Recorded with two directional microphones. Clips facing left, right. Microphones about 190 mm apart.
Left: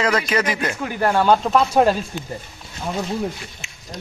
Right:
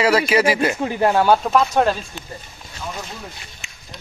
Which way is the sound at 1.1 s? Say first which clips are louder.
Left 1 dB; 5° right (ahead or behind).